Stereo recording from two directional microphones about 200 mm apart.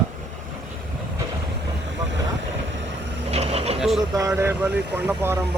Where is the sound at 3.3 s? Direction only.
30° right (ahead or behind).